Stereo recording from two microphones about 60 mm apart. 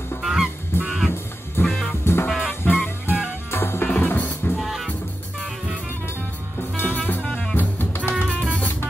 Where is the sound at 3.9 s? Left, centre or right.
Left.